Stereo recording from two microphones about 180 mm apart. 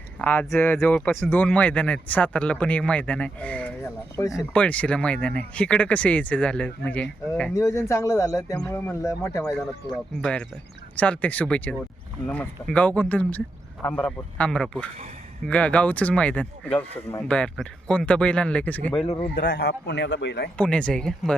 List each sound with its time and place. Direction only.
0.2 s speech: 10° left (ahead or behind)
7.5 s speech: 15° left (ahead or behind)
10.2 s speech: 5° left (ahead or behind)
19.3 s a man's voice: 60° left (ahead or behind)
20.6 s speech: 5° left (ahead or behind)